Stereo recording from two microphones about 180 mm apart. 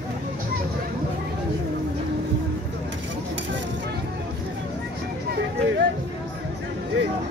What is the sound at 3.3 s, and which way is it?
Vehicle, 80° right.